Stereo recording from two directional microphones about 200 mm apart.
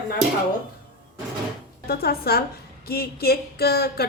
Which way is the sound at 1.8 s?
50° left (ahead or behind).